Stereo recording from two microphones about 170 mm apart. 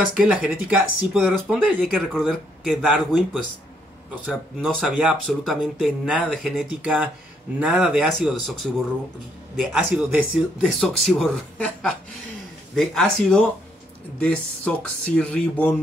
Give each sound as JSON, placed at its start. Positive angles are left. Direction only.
{"t": 0.1, "sound": "speech", "side_deg": -5}
{"t": 4.3, "sound": "speech", "side_deg": 0}
{"t": 9.6, "sound": "speech", "side_deg": 0}